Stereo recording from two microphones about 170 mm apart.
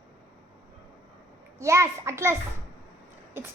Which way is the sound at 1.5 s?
15° right (ahead or behind).